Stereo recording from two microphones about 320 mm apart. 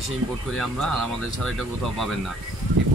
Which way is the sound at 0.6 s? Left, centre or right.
Centre.